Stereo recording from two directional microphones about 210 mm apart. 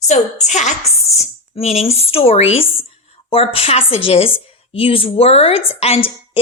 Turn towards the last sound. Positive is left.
turn(degrees=30)  # may be behind; listen again after turning